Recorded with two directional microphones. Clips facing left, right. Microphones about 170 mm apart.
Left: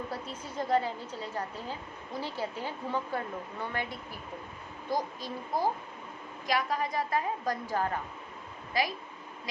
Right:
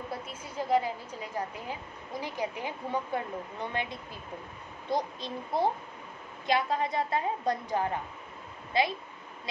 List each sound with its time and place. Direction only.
0.3 s a woman's voice: 10° right (ahead or behind); by 8.9 s 25° right (ahead or behind)